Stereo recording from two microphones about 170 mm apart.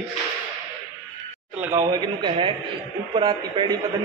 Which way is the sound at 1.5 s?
10° right (ahead or behind).